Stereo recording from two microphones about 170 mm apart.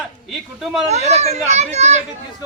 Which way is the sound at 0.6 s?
Centre (ahead or behind).